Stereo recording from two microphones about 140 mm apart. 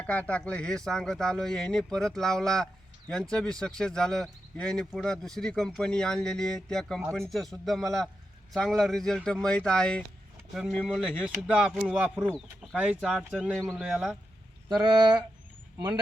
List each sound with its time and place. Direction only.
0.0 s speech: 10° left (ahead or behind)
11.3 s speech: 5° right (ahead or behind)
12.7 s speech: 10° right (ahead or behind)